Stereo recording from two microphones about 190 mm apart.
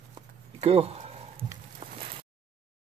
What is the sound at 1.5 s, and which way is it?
Walk, 25° right (ahead or behind).